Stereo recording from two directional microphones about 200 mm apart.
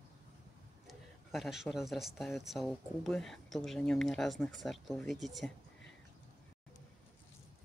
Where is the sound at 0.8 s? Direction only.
Centre (ahead or behind).